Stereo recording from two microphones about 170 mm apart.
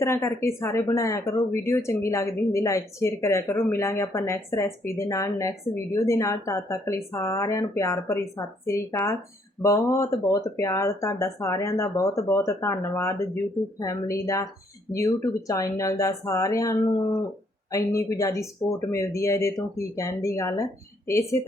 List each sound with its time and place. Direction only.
0.0 s speech: 15° left (ahead or behind)